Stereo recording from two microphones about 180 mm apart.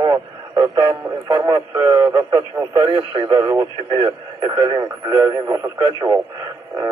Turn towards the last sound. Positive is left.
turn(degrees=-20)  # may be behind; listen again after turning